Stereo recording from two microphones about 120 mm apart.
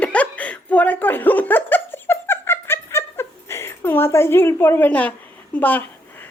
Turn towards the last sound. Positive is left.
turn(degrees=15)  # may be behind; listen again after turning